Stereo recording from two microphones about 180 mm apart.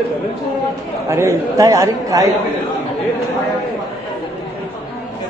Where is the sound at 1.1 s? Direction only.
15° right (ahead or behind).